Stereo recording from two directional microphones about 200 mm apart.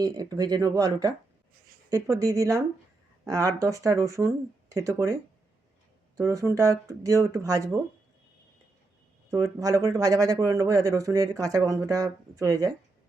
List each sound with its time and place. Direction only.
0.0 s speech: 20° right (ahead or behind)
9.3 s speech: 15° right (ahead or behind)